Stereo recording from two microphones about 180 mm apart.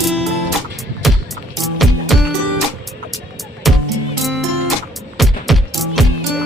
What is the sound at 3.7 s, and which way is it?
Music, centre (ahead or behind).